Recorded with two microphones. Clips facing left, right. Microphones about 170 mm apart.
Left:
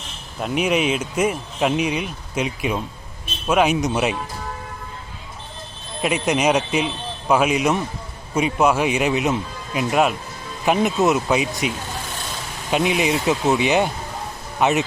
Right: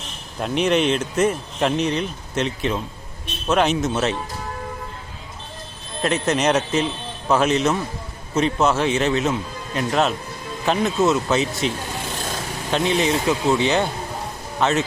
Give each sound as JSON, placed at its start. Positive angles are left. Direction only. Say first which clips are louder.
{"t": 0.3, "sound": "speech", "louder": "right 1 dB", "side_deg": 5}
{"t": 6.0, "sound": "speech", "louder": "even", "side_deg": 10}
{"t": 12.7, "sound": "speech", "louder": "even", "side_deg": 10}